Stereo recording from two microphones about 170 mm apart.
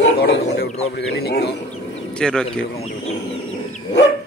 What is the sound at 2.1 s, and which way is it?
Speech, 5° left (ahead or behind).